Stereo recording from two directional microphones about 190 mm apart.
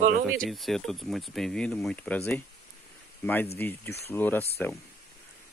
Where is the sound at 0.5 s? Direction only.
Centre (ahead or behind).